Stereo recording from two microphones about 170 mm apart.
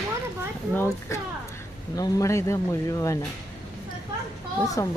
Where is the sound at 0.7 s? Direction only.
15° left (ahead or behind).